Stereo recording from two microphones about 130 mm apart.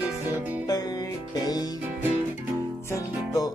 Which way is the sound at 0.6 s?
30° left (ahead or behind).